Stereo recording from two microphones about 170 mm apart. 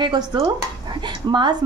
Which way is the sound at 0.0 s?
25° right (ahead or behind).